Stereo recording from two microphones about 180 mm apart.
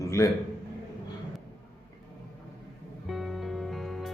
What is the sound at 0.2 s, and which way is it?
Speech, 15° left (ahead or behind).